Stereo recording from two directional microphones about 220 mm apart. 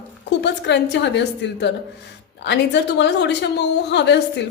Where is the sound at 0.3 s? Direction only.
50° left (ahead or behind).